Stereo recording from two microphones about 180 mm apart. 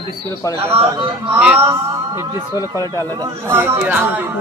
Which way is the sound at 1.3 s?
5° right (ahead or behind).